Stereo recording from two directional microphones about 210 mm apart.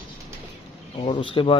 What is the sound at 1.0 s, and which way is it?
Speech, 25° left (ahead or behind).